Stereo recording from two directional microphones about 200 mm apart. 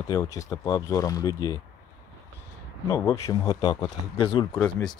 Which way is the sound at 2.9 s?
15° left (ahead or behind).